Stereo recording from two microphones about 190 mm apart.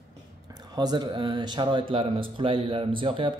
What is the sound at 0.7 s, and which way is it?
Speech, 25° right (ahead or behind).